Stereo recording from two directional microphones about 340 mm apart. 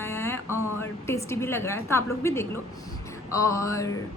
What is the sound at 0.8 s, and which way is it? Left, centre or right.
A woman's voice, centre.